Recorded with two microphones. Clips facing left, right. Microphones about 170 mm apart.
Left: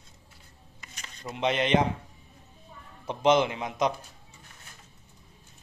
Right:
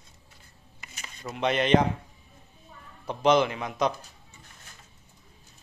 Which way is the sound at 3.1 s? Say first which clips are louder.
Right 1 dB; 20° left (ahead or behind).